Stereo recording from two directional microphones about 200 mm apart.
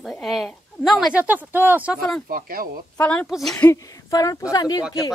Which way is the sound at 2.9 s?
5° left (ahead or behind).